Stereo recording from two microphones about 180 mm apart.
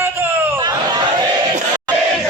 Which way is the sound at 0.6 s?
25° right (ahead or behind).